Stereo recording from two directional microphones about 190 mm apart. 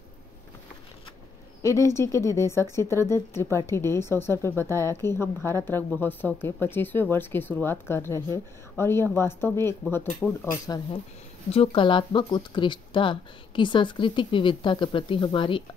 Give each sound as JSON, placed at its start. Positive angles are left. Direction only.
{"t": 1.6, "sound": "speech", "side_deg": 15}
{"t": 11.5, "sound": "speech", "side_deg": 30}